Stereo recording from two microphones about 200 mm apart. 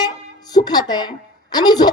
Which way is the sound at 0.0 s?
20° left (ahead or behind).